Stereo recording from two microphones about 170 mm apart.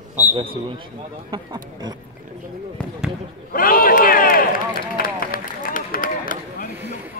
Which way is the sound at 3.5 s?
55° left (ahead or behind).